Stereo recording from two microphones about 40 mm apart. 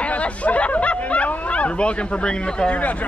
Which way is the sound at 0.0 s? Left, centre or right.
Left.